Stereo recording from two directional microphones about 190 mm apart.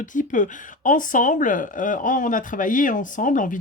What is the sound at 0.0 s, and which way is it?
Speech, 40° left (ahead or behind).